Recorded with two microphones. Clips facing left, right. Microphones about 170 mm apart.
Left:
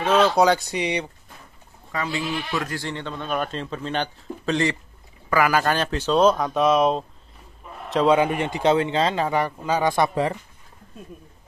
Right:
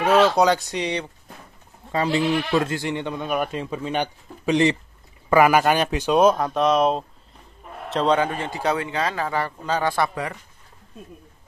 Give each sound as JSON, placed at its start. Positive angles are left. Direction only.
{"t": 0.0, "sound": "a sound", "side_deg": -10}
{"t": 0.4, "sound": "speech", "side_deg": 0}
{"t": 2.5, "sound": "a man's voice", "side_deg": -25}